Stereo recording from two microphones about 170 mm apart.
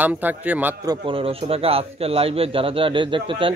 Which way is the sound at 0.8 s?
25° right (ahead or behind).